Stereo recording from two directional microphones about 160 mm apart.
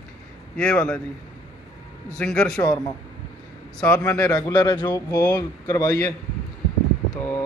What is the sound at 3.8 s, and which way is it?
Speech, 10° left (ahead or behind).